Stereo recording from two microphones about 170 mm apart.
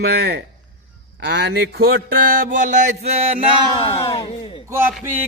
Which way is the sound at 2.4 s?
50° right (ahead or behind).